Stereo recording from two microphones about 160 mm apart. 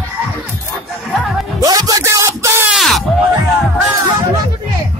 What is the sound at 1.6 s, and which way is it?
Music, 20° right (ahead or behind).